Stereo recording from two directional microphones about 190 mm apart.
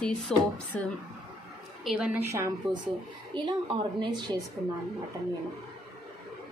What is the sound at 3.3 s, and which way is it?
A woman's voice, 25° right (ahead or behind).